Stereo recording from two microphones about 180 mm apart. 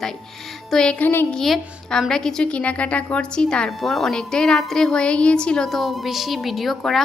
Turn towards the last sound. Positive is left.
turn(degrees=0)  # may be behind; listen again after turning